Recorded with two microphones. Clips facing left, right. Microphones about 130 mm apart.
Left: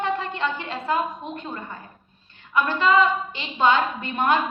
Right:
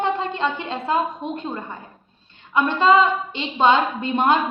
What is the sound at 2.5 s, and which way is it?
A woman's voice, 25° right (ahead or behind).